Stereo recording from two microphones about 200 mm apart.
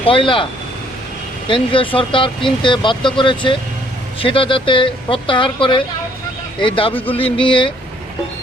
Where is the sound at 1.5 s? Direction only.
25° left (ahead or behind).